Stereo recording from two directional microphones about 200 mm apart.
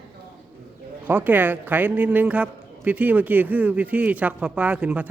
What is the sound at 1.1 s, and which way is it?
Speech, 10° right (ahead or behind).